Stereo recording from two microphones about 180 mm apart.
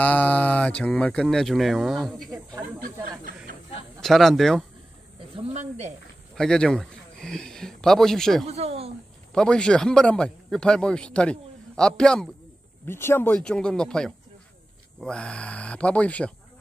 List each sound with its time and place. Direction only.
0.0 s speech: 10° left (ahead or behind)
4.0 s a man's voice: centre (ahead or behind)
5.3 s speech: 35° right (ahead or behind)
6.3 s speech: 5° left (ahead or behind)
8.5 s speech: 35° right (ahead or behind)
9.3 s a man's voice: 5° left (ahead or behind)